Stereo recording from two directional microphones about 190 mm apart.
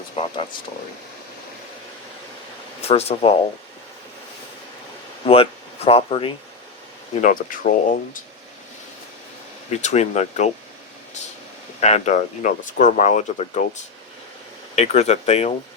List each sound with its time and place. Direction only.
0.2 s speech: 30° left (ahead or behind)
2.8 s speech: 30° left (ahead or behind)
5.2 s speech: 30° left (ahead or behind)
7.2 s speech: 45° left (ahead or behind)
9.6 s speech: 35° left (ahead or behind)
11.8 s speech: 35° left (ahead or behind)